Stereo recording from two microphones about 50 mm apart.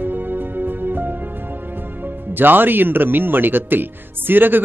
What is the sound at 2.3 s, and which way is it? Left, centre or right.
Speech, right.